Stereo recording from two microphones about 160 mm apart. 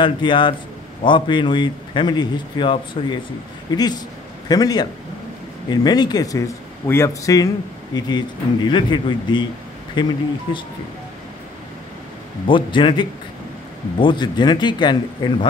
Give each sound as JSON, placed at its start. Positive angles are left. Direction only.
{"t": 0.0, "sound": "speech", "side_deg": 30}
{"t": 12.4, "sound": "speech", "side_deg": 30}